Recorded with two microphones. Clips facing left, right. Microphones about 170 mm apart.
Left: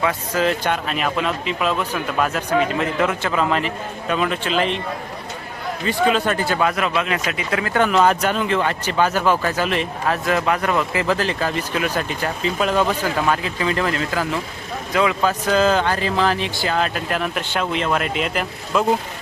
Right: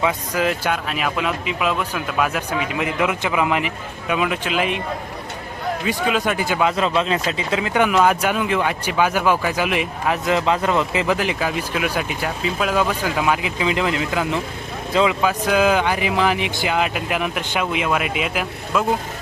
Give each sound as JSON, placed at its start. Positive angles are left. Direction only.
{"t": 0.0, "sound": "speech", "side_deg": -15}
{"t": 5.8, "sound": "speech", "side_deg": -10}